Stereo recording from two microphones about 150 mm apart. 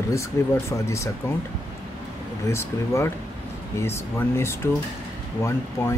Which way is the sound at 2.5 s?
15° left (ahead or behind).